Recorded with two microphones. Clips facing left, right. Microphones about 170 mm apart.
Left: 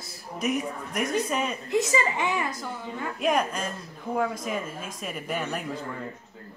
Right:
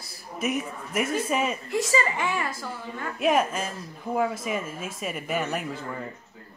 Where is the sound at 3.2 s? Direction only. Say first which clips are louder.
Right 3 dB; 5° right (ahead or behind).